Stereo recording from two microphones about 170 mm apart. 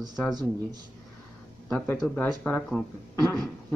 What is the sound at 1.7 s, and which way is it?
Speech, 5° left (ahead or behind).